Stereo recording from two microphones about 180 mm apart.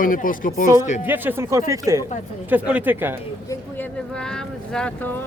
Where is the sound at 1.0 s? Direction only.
10° right (ahead or behind).